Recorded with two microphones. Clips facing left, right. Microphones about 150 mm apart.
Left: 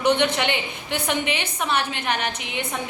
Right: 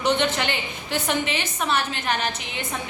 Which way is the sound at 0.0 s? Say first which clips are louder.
Left 2 dB; 15° left (ahead or behind).